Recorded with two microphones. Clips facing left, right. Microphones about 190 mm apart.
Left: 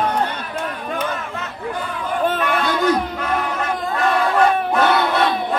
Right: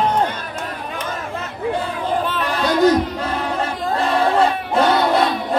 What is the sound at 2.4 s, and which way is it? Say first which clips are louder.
Battle cry: right 3 dB; 35° right (ahead or behind).